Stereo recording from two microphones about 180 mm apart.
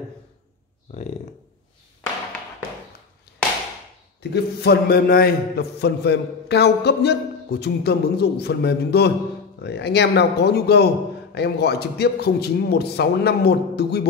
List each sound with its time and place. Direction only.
0.9 s speech: 35° left (ahead or behind)
4.2 s a man's voice: 65° left (ahead or behind)